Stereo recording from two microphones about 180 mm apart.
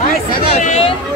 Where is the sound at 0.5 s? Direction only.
35° left (ahead or behind).